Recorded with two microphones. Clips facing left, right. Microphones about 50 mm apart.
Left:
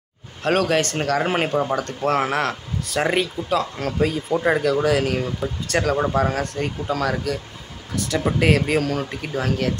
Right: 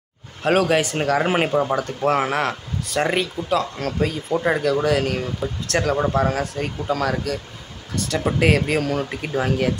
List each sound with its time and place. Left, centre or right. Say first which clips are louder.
0.4 s speech: right 1 dB; centre